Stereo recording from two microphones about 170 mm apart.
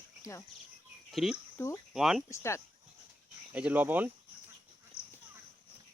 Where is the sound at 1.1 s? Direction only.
Centre (ahead or behind).